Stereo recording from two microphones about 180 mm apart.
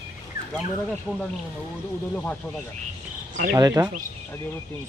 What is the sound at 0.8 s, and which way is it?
Speech, 5° left (ahead or behind).